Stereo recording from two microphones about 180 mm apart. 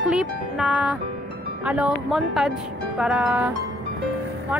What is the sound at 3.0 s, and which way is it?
Music, 5° right (ahead or behind).